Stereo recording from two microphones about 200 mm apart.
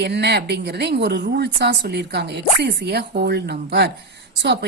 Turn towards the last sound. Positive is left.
turn(degrees=-60)  # may be behind; listen again after turning